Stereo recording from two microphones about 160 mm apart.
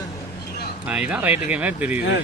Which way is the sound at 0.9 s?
5° right (ahead or behind).